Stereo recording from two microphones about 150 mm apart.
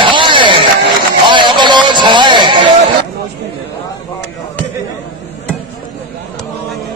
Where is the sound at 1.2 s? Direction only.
30° right (ahead or behind).